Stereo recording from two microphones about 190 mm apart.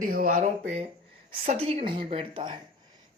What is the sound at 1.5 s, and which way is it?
Speech, 35° right (ahead or behind).